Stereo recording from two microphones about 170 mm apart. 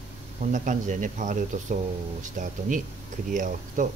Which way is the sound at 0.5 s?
50° right (ahead or behind).